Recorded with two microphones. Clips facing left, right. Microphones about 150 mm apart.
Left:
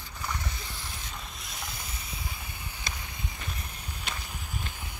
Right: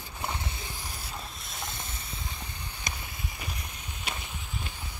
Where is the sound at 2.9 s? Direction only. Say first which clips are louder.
Right 1 dB; 15° right (ahead or behind).